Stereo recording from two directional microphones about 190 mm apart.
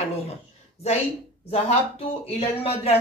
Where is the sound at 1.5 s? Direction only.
35° left (ahead or behind).